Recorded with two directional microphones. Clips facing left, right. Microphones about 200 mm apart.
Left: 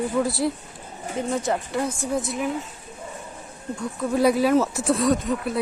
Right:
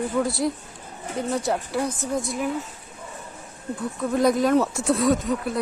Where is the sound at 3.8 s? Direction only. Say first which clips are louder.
Left 1 dB; 5° left (ahead or behind).